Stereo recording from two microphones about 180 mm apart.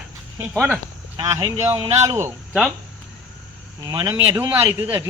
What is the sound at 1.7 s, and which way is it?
Speech, 15° right (ahead or behind).